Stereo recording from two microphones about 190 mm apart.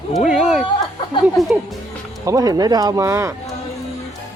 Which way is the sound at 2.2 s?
20° right (ahead or behind).